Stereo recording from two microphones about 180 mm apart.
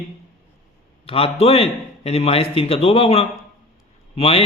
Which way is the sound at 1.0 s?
30° left (ahead or behind).